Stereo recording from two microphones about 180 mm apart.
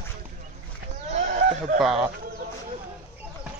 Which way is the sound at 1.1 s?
45° right (ahead or behind).